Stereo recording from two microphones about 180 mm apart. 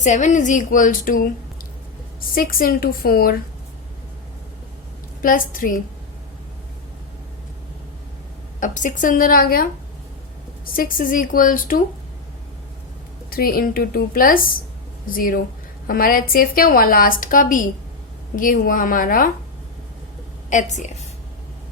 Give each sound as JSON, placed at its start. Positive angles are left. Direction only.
{"t": 0.0, "sound": "a woman's voice", "side_deg": 40}
{"t": 2.3, "sound": "a woman's voice", "side_deg": 55}
{"t": 5.2, "sound": "a woman's voice", "side_deg": 50}
{"t": 8.6, "sound": "a woman's voice", "side_deg": 45}
{"t": 10.8, "sound": "a woman's voice", "side_deg": 50}
{"t": 13.3, "sound": "a woman's voice", "side_deg": 55}
{"t": 20.5, "sound": "a woman's voice", "side_deg": 40}